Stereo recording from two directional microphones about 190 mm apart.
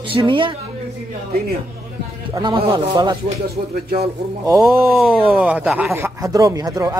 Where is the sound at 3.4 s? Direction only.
55° right (ahead or behind).